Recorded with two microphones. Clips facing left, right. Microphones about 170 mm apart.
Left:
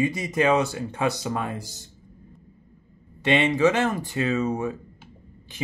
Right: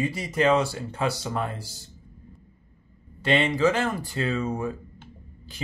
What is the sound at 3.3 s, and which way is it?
Speech, 20° left (ahead or behind).